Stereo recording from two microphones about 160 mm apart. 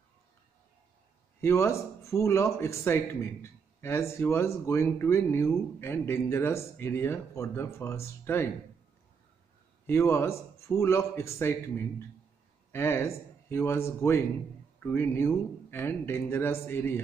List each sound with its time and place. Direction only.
1.4 s speech: 15° left (ahead or behind)
9.8 s speech: 15° left (ahead or behind)